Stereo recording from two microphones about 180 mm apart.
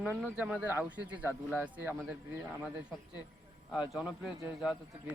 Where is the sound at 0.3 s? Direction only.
5° right (ahead or behind).